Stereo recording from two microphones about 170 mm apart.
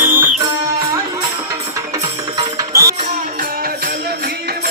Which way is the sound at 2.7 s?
20° right (ahead or behind).